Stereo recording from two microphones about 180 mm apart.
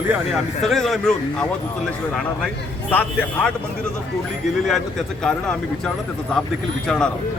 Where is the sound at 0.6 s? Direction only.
Centre (ahead or behind).